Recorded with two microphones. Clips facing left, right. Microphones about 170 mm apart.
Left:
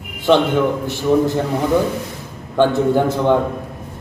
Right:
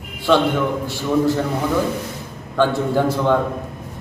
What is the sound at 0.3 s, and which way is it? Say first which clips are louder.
Speech: left 2 dB; 15° left (ahead or behind).